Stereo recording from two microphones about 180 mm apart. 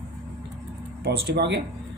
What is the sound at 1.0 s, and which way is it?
Speech, 65° right (ahead or behind).